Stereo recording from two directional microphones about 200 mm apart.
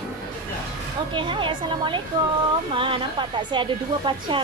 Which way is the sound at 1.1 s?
25° right (ahead or behind).